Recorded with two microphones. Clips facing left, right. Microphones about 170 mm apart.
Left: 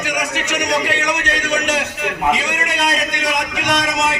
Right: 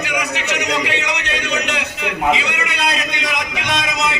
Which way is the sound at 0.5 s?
45° left (ahead or behind).